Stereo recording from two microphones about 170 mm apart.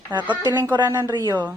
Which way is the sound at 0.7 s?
20° right (ahead or behind).